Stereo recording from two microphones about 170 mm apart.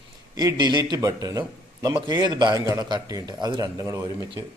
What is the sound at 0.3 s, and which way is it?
Speech, 20° right (ahead or behind).